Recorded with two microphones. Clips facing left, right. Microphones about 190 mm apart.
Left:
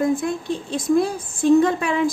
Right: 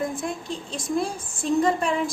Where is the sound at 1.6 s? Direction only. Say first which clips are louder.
Left 3 dB; 65° left (ahead or behind).